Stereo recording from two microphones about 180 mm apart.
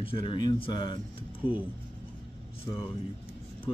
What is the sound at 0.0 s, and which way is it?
Speech, 30° left (ahead or behind).